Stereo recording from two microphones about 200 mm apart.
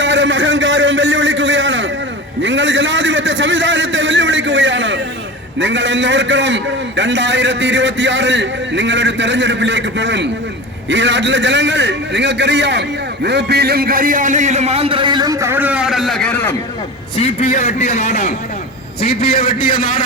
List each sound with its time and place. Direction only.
0.0 s a sound: 65° right (ahead or behind)
5.5 s a man's voice: 65° right (ahead or behind); by 16.6 s 10° left (ahead or behind)
17.2 s a man's voice: 35° left (ahead or behind)
19.0 s a man's voice: 50° left (ahead or behind)